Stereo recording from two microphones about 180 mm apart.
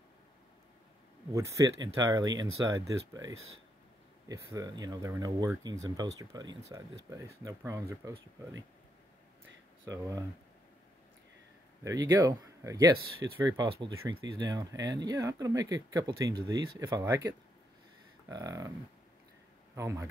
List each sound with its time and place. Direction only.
1.3 s speech: 20° right (ahead or behind)
9.8 s speech: 20° right (ahead or behind)
11.8 s speech: 20° right (ahead or behind)
19.7 s a man's voice: 15° right (ahead or behind)